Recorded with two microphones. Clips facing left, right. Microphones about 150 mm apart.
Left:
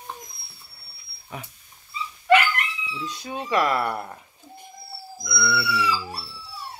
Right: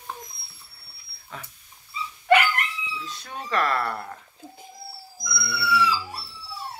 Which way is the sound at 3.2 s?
10° left (ahead or behind).